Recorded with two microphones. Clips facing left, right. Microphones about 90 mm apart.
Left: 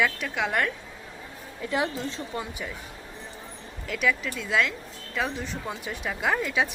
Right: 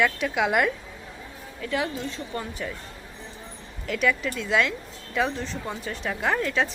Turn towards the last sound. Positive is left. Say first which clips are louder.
# right 1 dB
turn(degrees=10)  # may be behind; listen again after turning